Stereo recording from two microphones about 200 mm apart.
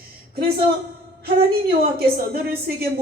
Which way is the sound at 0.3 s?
50° right (ahead or behind).